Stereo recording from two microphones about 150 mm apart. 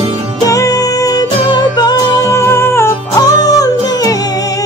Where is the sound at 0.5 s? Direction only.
20° left (ahead or behind).